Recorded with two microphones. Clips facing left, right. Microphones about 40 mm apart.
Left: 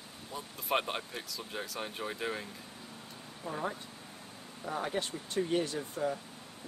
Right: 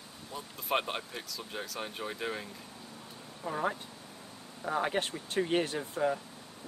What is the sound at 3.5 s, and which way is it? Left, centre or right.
Speech, right.